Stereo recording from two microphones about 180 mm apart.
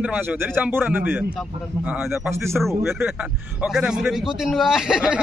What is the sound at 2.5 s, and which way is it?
A man's voice, centre (ahead or behind).